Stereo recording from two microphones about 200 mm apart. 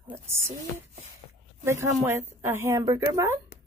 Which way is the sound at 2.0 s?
10° right (ahead or behind).